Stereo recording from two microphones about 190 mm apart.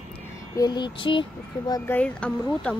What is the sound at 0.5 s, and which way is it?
Mantra, 20° left (ahead or behind).